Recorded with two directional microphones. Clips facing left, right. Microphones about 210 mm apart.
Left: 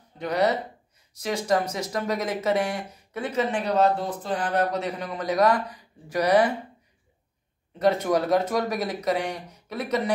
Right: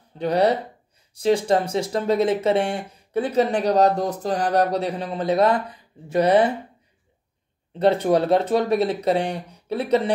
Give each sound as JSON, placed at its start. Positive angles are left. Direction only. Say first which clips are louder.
{"t": 0.2, "sound": "speech", "louder": "right 4 dB", "side_deg": -30}
{"t": 7.8, "sound": "speech", "louder": "right 4 dB", "side_deg": -30}